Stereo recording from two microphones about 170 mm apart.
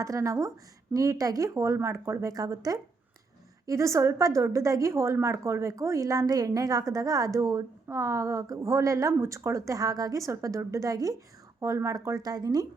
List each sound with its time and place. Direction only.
0.0 s a woman's voice: 20° right (ahead or behind)